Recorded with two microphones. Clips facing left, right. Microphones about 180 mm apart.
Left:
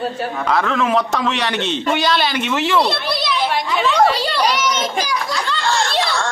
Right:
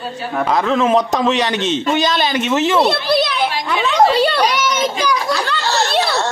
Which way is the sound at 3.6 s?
60° right (ahead or behind).